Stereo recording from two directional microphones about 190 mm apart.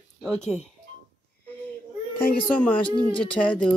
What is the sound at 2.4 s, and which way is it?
Speech, 5° left (ahead or behind).